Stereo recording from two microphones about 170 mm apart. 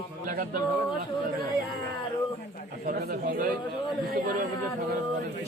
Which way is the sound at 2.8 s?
65° right (ahead or behind).